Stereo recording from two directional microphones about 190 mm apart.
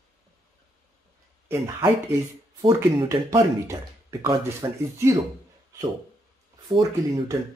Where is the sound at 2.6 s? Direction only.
20° right (ahead or behind).